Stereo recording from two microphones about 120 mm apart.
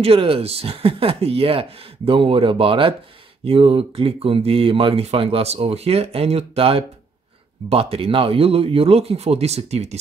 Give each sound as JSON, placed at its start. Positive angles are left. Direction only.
{"t": 0.0, "sound": "speech", "side_deg": -50}